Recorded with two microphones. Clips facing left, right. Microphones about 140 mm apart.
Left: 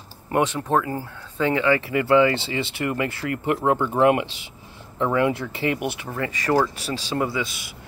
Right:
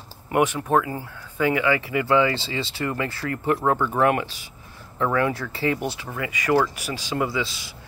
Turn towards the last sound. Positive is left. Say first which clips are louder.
# even
turn(degrees=25)  # may be behind; listen again after turning